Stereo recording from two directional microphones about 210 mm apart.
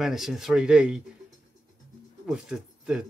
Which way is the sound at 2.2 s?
5° right (ahead or behind).